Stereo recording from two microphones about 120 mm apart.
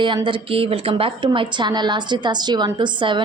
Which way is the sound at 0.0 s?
45° right (ahead or behind).